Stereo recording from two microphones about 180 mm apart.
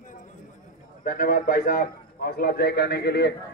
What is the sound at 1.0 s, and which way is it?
A man's voice, 50° left (ahead or behind).